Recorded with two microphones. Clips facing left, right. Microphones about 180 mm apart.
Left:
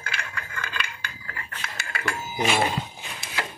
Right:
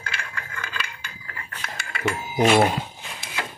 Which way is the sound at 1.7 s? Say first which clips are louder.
Right 5 dB; centre (ahead or behind).